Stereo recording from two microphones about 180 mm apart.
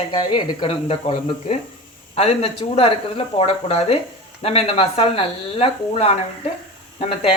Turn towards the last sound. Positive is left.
turn(degrees=35)  # may be behind; listen again after turning